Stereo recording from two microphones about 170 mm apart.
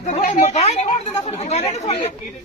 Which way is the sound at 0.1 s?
45° left (ahead or behind).